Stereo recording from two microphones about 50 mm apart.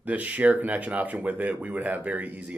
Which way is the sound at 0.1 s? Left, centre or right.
Right.